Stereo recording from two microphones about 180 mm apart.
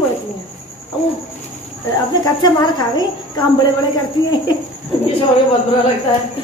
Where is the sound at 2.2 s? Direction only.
25° left (ahead or behind).